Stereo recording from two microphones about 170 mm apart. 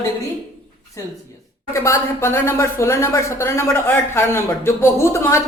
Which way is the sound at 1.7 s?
15° left (ahead or behind).